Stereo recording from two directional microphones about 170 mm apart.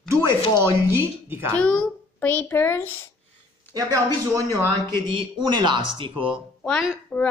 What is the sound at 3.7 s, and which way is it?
Speech, 20° right (ahead or behind).